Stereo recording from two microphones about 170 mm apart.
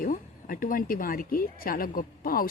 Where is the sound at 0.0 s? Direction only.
55° left (ahead or behind).